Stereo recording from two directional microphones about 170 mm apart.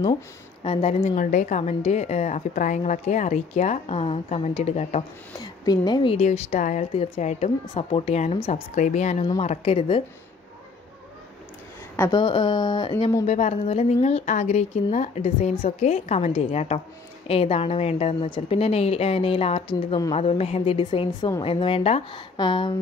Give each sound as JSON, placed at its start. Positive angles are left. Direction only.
{"t": 0.7, "sound": "a woman's voice", "side_deg": 35}
{"t": 1.1, "sound": "a woman's voice", "side_deg": 50}
{"t": 5.4, "sound": "a woman's voice", "side_deg": 25}
{"t": 6.2, "sound": "a woman's voice", "side_deg": 45}
{"t": 12.1, "sound": "a woman's voice", "side_deg": 30}
{"t": 13.3, "sound": "a woman's voice", "side_deg": 40}